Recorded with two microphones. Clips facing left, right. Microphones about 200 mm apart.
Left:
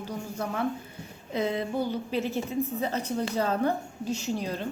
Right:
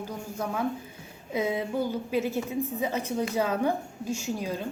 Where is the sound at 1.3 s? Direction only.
10° right (ahead or behind).